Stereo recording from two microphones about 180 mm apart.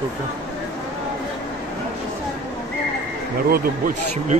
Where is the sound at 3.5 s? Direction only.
50° right (ahead or behind).